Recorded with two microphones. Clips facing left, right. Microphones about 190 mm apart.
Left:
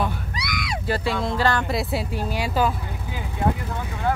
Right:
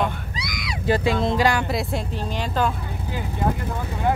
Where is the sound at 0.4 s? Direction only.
60° left (ahead or behind).